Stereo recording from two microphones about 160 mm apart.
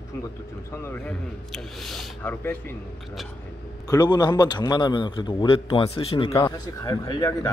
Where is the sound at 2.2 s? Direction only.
15° left (ahead or behind).